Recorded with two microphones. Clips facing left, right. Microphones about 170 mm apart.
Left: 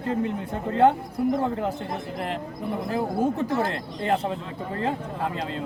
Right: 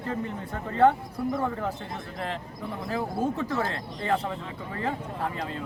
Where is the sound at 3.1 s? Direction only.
20° left (ahead or behind).